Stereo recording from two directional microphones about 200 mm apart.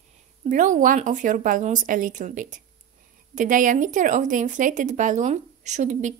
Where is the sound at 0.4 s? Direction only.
40° right (ahead or behind).